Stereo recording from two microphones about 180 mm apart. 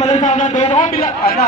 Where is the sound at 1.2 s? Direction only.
60° left (ahead or behind).